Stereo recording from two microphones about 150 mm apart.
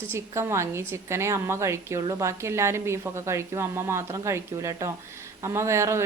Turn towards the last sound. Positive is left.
turn(degrees=-20)  # may be behind; listen again after turning